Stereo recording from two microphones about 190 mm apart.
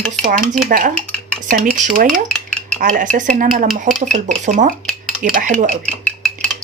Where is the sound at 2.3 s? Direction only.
5° left (ahead or behind).